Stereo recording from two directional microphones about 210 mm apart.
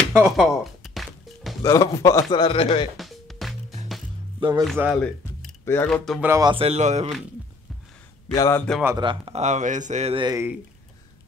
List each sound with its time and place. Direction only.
0.2 s music: centre (ahead or behind)
1.6 s a man's voice: 15° left (ahead or behind)
3.0 s music: centre (ahead or behind)
4.4 s speech: 20° right (ahead or behind)
5.0 s speech: 10° left (ahead or behind)
6.2 s speech: 15° right (ahead or behind)
6.5 s speech: 30° right (ahead or behind)
8.3 s a man's voice: 15° left (ahead or behind)
8.8 s speech: 20° right (ahead or behind)